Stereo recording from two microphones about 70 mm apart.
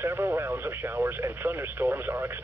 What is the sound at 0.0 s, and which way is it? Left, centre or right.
Speech, right.